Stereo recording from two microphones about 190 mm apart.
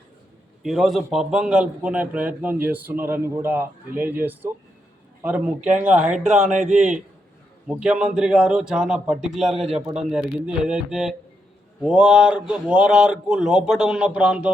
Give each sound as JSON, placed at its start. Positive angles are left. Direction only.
{"t": 0.6, "sound": "a man's voice", "side_deg": 0}
{"t": 5.5, "sound": "speech", "side_deg": -40}
{"t": 7.7, "sound": "speech", "side_deg": -5}
{"t": 9.7, "sound": "speech", "side_deg": -35}
{"t": 10.1, "sound": "speech", "side_deg": -5}